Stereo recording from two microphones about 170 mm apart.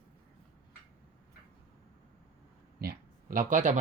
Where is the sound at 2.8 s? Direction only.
60° right (ahead or behind).